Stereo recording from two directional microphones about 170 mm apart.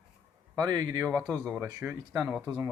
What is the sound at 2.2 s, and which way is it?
Speech, 5° right (ahead or behind).